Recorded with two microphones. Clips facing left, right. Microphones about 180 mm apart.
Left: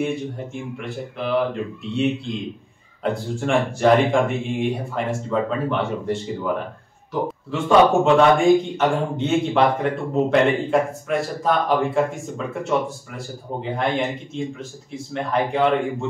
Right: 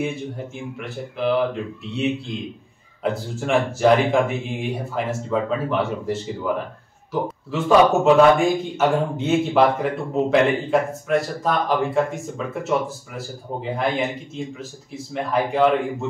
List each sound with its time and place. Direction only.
0.7 s a man's voice: centre (ahead or behind)